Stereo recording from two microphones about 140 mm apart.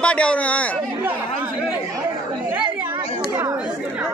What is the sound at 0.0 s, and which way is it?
Speech, 10° left (ahead or behind).